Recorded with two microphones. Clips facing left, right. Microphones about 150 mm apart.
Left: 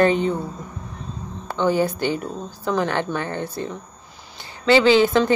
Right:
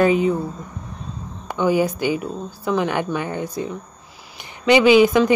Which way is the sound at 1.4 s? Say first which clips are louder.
Right 1 dB; 10° right (ahead or behind).